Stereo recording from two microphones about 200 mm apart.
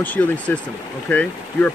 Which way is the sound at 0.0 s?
10° left (ahead or behind).